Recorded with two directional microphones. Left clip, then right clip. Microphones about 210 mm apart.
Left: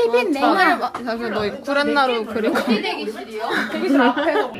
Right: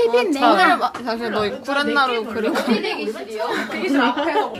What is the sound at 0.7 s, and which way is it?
Speech, 10° right (ahead or behind).